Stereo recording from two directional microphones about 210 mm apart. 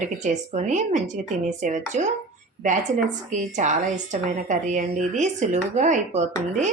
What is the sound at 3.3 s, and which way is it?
Speech, 35° right (ahead or behind).